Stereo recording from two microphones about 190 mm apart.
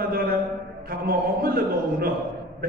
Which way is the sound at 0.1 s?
55° right (ahead or behind).